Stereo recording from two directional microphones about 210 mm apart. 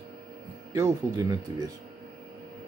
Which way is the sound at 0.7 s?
15° right (ahead or behind).